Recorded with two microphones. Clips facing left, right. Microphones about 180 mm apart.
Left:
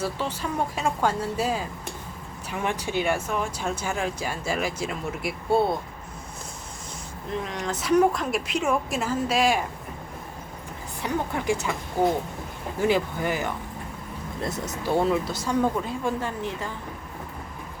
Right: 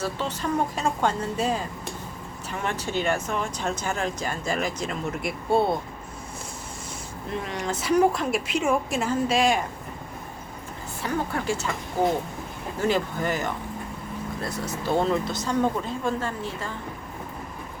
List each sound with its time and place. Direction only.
0.0 s speech: 10° left (ahead or behind)
7.4 s speech: centre (ahead or behind)
11.0 s speech: 15° left (ahead or behind)
12.8 s speech: 10° left (ahead or behind)
14.9 s speech: 10° left (ahead or behind)